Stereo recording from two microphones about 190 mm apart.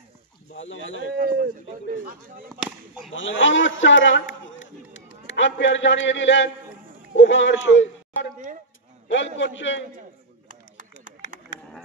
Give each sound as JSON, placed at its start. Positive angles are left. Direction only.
{"t": 0.5, "sound": "speech", "side_deg": 80}
{"t": 1.1, "sound": "a man's voice", "side_deg": -45}
{"t": 3.1, "sound": "a man's voice", "side_deg": 80}
{"t": 9.4, "sound": "a man's voice", "side_deg": 75}
{"t": 10.5, "sound": "a sound", "side_deg": -45}